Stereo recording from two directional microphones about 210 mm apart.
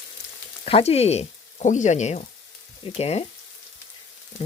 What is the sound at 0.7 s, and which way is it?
Speech, 30° left (ahead or behind).